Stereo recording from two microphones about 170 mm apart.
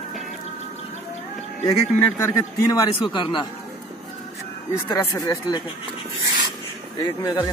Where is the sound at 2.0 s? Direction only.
20° left (ahead or behind).